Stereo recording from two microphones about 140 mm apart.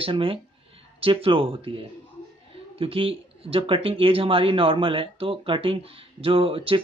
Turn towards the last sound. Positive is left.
turn(degrees=-40)  # may be behind; listen again after turning